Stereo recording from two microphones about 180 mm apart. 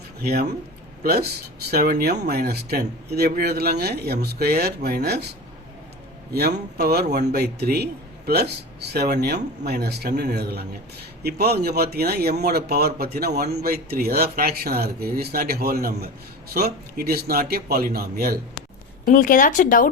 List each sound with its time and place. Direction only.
0.2 s speech: 60° right (ahead or behind)
6.3 s speech: 60° right (ahead or behind)
19.0 s speech: 50° left (ahead or behind)